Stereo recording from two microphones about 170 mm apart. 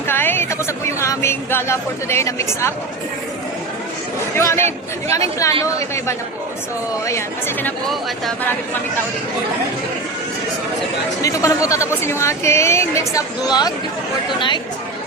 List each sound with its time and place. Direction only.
0.1 s a sound: 15° left (ahead or behind)
0.9 s speech: 15° left (ahead or behind)
4.4 s a woman's voice: 15° left (ahead or behind)
11.2 s a woman's voice: 20° left (ahead or behind)